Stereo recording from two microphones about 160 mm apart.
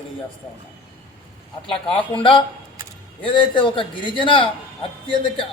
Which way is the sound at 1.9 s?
35° left (ahead or behind).